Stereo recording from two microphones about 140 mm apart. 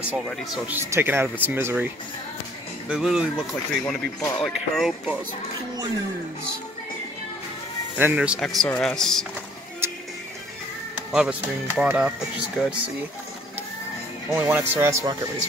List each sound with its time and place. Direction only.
0.7 s speech: 15° right (ahead or behind)
2.9 s speech: 5° right (ahead or behind)
8.0 s speech: 10° right (ahead or behind)
9.8 s music: 15° right (ahead or behind)
11.1 s speech: 5° right (ahead or behind)
14.3 s speech: 15° right (ahead or behind)